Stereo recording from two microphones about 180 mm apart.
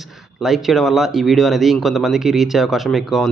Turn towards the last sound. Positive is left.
turn(degrees=0)  # may be behind; listen again after turning